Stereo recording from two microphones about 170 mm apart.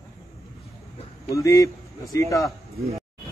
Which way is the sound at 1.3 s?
20° left (ahead or behind).